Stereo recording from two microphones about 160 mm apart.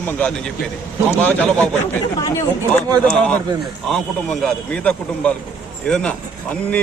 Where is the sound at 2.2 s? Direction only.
15° left (ahead or behind).